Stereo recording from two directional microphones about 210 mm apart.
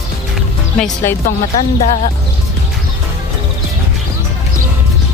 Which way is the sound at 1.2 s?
40° left (ahead or behind).